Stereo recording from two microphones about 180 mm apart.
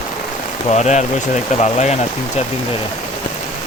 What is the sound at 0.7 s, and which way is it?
Speech, 40° left (ahead or behind).